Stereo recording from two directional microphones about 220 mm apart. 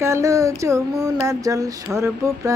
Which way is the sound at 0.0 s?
15° right (ahead or behind).